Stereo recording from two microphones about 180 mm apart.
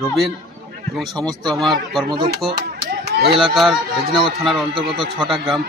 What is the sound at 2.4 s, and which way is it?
Chop, 60° right (ahead or behind).